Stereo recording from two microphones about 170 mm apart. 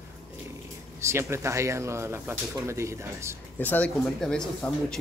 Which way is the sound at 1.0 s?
15° right (ahead or behind).